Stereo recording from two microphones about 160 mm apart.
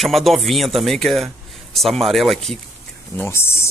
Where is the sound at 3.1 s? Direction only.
15° left (ahead or behind).